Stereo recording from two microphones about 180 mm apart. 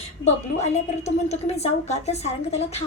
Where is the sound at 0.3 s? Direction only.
35° left (ahead or behind).